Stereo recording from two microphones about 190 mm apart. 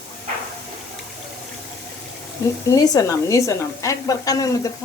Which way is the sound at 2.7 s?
20° left (ahead or behind).